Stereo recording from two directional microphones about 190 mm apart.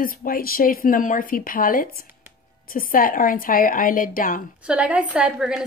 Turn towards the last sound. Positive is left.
turn(degrees=-5)  # may be behind; listen again after turning